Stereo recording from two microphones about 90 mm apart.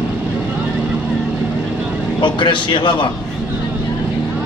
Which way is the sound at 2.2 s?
65° left (ahead or behind).